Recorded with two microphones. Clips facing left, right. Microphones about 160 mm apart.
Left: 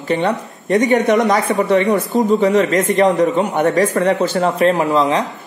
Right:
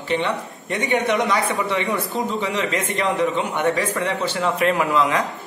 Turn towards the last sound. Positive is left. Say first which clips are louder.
# left 4 dB
turn(degrees=30)  # may be behind; listen again after turning